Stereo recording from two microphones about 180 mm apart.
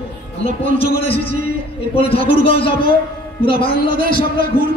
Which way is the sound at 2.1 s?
45° right (ahead or behind).